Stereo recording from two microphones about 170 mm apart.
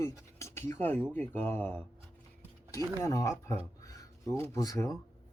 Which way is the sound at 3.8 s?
20° left (ahead or behind).